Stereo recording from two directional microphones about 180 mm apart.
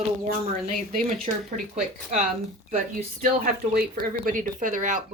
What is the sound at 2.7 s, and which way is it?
Speech, 50° right (ahead or behind).